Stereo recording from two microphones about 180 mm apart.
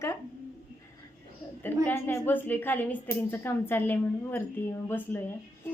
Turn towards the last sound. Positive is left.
turn(degrees=10)  # may be behind; listen again after turning